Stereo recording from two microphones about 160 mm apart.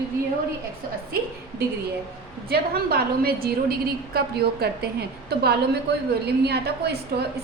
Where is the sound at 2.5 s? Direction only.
70° right (ahead or behind); by 6.9 s 90° right.